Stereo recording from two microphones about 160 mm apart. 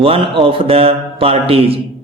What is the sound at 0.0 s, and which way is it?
A man's voice, 35° right (ahead or behind).